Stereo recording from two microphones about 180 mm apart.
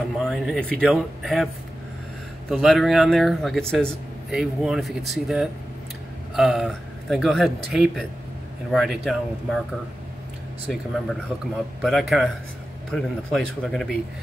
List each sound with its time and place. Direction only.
0.2 s speech: 5° left (ahead or behind)
2.5 s speech: centre (ahead or behind)
10.7 s speech: centre (ahead or behind)